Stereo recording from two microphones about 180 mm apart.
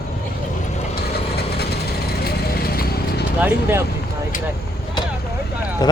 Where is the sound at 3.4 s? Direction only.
10° right (ahead or behind).